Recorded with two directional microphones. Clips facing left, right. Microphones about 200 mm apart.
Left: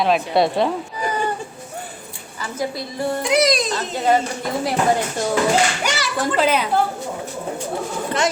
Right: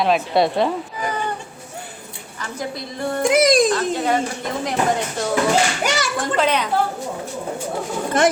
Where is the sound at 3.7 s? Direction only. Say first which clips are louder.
Even; centre (ahead or behind).